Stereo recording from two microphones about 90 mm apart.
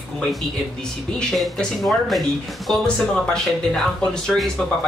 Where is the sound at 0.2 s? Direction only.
Centre (ahead or behind).